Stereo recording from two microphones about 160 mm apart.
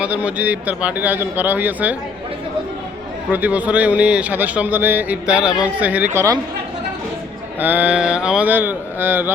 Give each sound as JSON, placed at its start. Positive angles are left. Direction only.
{"t": 0.0, "sound": "a man's voice", "side_deg": -10}
{"t": 3.3, "sound": "a man's voice", "side_deg": -10}
{"t": 6.1, "sound": "a woman's voice", "side_deg": -20}
{"t": 7.6, "sound": "a man's voice", "side_deg": -10}